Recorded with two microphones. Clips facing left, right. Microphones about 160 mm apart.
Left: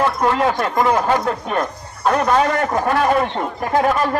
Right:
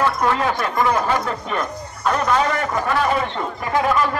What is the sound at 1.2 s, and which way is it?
A man's voice, 50° left (ahead or behind).